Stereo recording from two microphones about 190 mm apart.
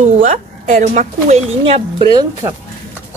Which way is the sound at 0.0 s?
40° right (ahead or behind).